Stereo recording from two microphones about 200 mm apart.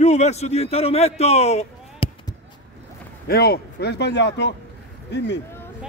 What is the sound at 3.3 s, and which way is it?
Speech, 50° left (ahead or behind).